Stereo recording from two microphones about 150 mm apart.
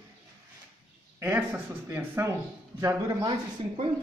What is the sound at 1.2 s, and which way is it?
Speech, 10° right (ahead or behind).